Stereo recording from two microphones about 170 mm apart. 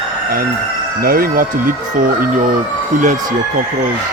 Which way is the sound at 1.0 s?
60° right (ahead or behind).